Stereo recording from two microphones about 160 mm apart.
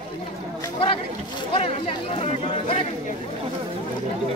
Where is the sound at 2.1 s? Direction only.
35° left (ahead or behind).